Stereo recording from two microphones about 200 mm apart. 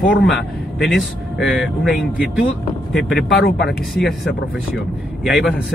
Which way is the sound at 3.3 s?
55° left (ahead or behind).